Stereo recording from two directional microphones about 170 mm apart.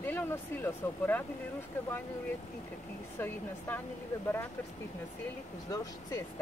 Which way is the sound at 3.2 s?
10° left (ahead or behind).